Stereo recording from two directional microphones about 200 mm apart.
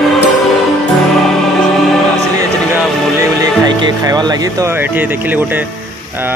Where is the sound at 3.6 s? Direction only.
20° right (ahead or behind).